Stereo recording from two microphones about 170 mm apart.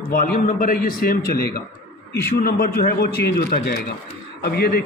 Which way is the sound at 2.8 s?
40° left (ahead or behind).